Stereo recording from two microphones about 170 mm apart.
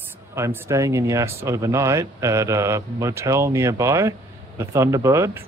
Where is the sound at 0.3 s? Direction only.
15° right (ahead or behind).